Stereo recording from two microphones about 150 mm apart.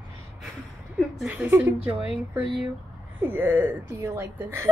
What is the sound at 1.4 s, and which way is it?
Speech, 15° right (ahead or behind).